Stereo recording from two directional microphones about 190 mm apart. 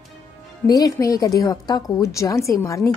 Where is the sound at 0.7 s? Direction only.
20° left (ahead or behind).